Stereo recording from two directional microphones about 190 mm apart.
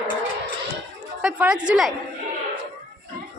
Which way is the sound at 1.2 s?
5° right (ahead or behind).